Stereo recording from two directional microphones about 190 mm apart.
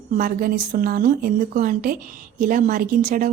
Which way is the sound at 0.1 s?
50° right (ahead or behind).